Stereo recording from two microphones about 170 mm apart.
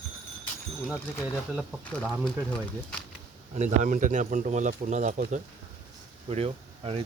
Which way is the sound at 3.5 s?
45° right (ahead or behind).